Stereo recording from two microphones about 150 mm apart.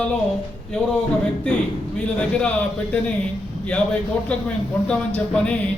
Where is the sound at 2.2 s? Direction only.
5° left (ahead or behind).